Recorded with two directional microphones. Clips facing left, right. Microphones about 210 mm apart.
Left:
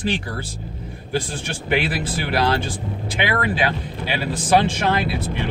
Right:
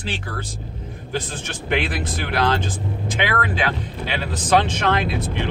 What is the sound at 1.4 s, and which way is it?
A man's voice, 10° left (ahead or behind).